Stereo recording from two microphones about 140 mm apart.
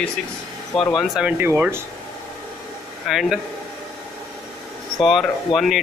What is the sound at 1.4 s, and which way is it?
Speech, 15° right (ahead or behind).